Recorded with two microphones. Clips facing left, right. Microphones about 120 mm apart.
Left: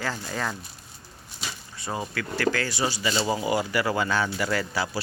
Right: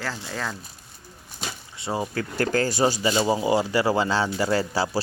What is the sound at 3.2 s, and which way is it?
Speech, 25° right (ahead or behind).